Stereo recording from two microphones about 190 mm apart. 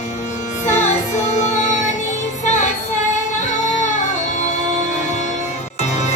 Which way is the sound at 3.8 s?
40° left (ahead or behind).